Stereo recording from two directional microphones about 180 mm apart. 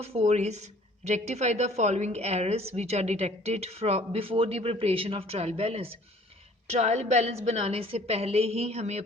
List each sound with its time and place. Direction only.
0.0 s a woman's voice: 35° right (ahead or behind)